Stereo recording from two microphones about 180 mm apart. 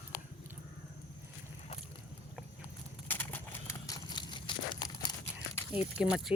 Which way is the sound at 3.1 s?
10° left (ahead or behind).